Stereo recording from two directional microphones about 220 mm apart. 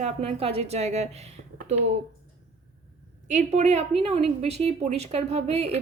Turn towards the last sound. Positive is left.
turn(degrees=-30)  # may be behind; listen again after turning